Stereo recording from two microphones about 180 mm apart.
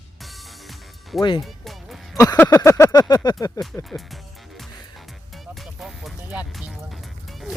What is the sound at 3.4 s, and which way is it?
Speech, 20° left (ahead or behind).